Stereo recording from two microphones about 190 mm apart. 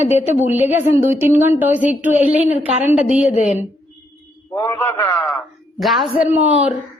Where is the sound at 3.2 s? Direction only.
35° left (ahead or behind).